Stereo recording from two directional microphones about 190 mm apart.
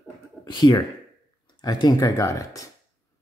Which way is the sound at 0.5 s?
20° left (ahead or behind).